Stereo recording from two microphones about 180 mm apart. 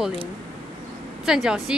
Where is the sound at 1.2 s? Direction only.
5° right (ahead or behind).